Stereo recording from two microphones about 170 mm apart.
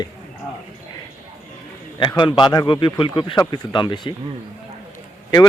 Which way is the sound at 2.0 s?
30° left (ahead or behind).